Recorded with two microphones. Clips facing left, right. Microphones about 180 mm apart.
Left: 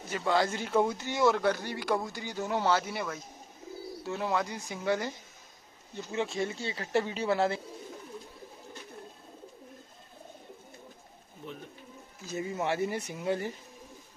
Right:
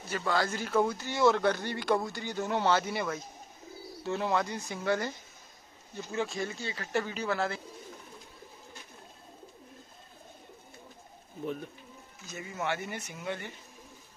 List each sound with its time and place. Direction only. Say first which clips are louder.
0.1 s speech: left 2 dB; 20° left (ahead or behind)
6.1 s speech: left 2 dB; 25° left (ahead or behind)
12.3 s speech: left 3 dB; 30° left (ahead or behind)